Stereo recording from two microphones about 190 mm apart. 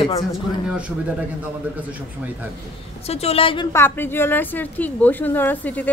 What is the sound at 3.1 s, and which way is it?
Speech, 30° left (ahead or behind).